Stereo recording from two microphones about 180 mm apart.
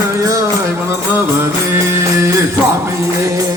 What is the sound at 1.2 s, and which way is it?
Music, 15° right (ahead or behind).